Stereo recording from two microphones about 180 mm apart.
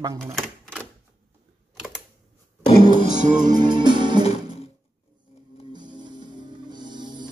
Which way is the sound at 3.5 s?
25° right (ahead or behind).